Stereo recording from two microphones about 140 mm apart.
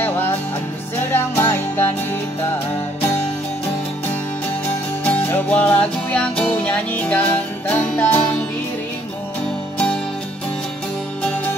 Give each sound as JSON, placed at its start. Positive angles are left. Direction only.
{"t": 1.1, "sound": "music", "side_deg": 15}
{"t": 5.0, "sound": "music", "side_deg": 10}